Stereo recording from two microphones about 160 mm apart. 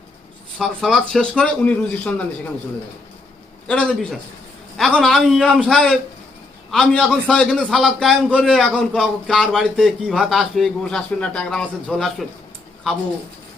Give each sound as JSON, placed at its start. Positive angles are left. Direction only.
{"t": 0.6, "sound": "a man's voice", "side_deg": 0}
{"t": 3.7, "sound": "a man's voice", "side_deg": 5}